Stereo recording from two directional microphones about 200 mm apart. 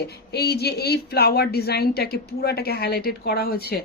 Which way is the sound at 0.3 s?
55° left (ahead or behind).